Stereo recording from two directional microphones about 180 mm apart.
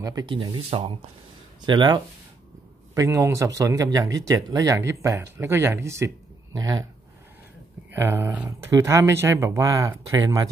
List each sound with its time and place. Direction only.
0.0 s speech: 20° right (ahead or behind)
7.9 s speech: 15° right (ahead or behind)